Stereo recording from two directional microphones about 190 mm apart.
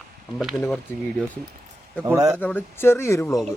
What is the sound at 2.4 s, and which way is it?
Speech, 10° left (ahead or behind).